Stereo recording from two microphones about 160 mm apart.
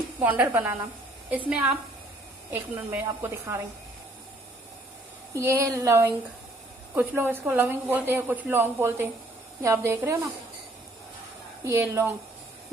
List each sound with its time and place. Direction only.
0.2 s a woman's voice: 10° right (ahead or behind)
1.5 s a woman's voice: 10° right (ahead or behind)
5.3 s a woman's voice: 20° right (ahead or behind)
11.6 s a woman's voice: 15° right (ahead or behind)